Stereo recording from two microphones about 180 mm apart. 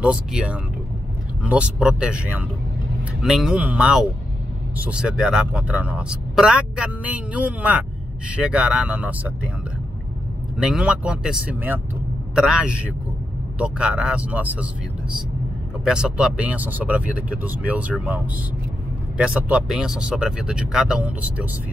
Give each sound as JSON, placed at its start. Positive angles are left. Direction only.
{"t": 0.0, "sound": "speech", "side_deg": -5}
{"t": 10.6, "sound": "speech", "side_deg": -5}
{"t": 15.8, "sound": "speech", "side_deg": -5}